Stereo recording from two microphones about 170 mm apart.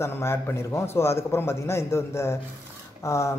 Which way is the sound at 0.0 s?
15° left (ahead or behind).